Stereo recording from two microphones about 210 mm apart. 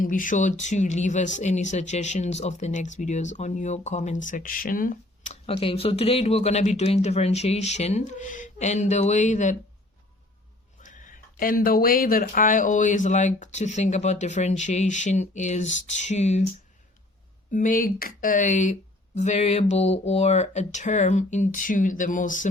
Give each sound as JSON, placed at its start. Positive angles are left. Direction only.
{"t": 0.0, "sound": "speech", "side_deg": 40}
{"t": 10.8, "sound": "speech", "side_deg": 40}
{"t": 17.5, "sound": "speech", "side_deg": 40}